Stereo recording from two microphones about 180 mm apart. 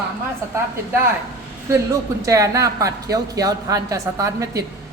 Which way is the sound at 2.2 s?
15° right (ahead or behind).